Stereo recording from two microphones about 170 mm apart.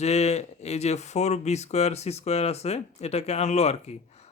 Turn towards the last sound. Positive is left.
turn(degrees=40)  # may be behind; listen again after turning